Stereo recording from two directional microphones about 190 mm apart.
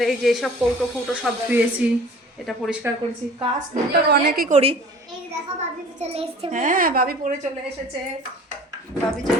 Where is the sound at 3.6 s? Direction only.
60° right (ahead or behind).